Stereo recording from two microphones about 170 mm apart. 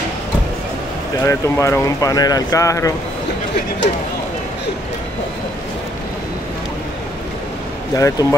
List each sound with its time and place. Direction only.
1.2 s speech: 15° left (ahead or behind)
7.9 s speech: 20° left (ahead or behind)